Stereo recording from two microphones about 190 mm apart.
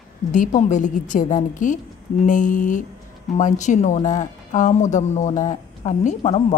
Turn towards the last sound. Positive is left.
turn(degrees=35)  # may be behind; listen again after turning